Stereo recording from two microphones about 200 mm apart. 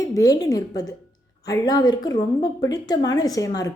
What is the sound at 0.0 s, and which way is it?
A woman's voice, 15° left (ahead or behind).